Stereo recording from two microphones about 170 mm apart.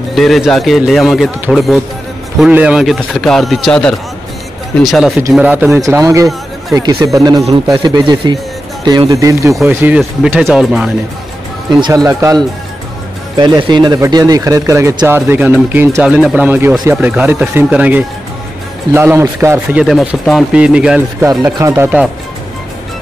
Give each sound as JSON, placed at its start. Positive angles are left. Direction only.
{"t": 0.1, "sound": "a man's voice", "side_deg": 0}
{"t": 11.8, "sound": "speech", "side_deg": -20}
{"t": 13.4, "sound": "speech", "side_deg": -25}
{"t": 19.8, "sound": "a man's voice", "side_deg": 0}